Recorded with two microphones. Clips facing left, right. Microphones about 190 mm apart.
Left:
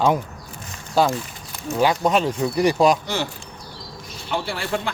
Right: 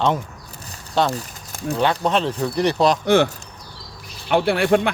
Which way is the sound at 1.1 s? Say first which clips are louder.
Left 1 dB; 35° right (ahead or behind).